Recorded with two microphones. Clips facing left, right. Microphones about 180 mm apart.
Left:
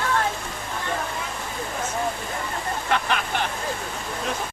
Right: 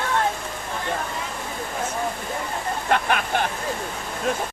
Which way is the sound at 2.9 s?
50° right (ahead or behind).